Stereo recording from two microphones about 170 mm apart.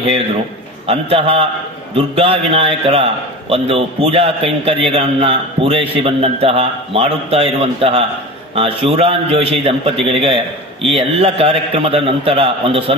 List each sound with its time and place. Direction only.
0.8 s a man's voice: 35° right (ahead or behind)